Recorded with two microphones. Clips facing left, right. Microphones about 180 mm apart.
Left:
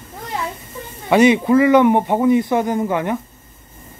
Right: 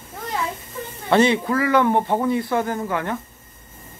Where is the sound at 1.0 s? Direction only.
15° left (ahead or behind).